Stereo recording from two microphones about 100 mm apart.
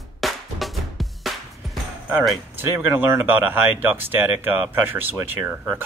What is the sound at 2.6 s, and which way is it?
Speech, 20° right (ahead or behind).